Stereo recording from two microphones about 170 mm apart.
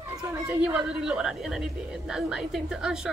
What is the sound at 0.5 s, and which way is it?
A woman's voice, 5° right (ahead or behind).